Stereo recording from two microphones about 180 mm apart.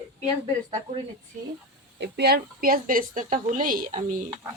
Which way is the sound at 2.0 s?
65° right (ahead or behind).